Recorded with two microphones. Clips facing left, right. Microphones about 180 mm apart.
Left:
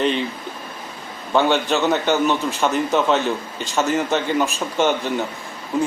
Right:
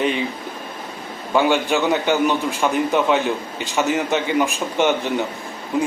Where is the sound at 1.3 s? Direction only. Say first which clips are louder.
Even; 10° right (ahead or behind).